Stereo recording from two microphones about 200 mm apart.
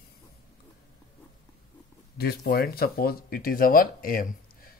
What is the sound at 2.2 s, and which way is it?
Speech, 50° left (ahead or behind).